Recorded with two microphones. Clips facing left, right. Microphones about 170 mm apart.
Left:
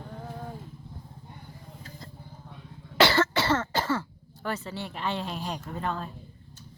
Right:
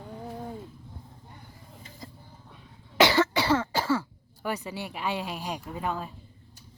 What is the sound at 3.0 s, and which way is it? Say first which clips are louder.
Cough: right 1 dB; 15° right (ahead or behind).